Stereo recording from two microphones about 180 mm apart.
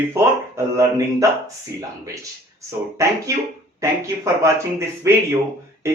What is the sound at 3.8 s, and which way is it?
Speech, 15° right (ahead or behind).